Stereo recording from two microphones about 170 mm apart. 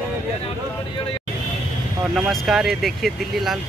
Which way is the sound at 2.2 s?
Centre (ahead or behind).